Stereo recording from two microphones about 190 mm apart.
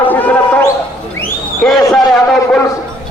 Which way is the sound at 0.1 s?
10° left (ahead or behind).